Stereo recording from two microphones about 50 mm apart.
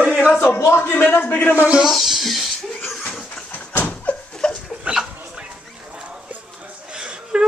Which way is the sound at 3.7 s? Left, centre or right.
Left.